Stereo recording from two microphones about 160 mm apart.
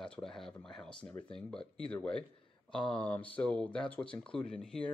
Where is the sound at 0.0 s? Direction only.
5° left (ahead or behind).